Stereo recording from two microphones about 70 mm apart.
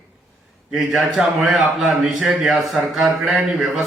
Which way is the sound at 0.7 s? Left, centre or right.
Centre.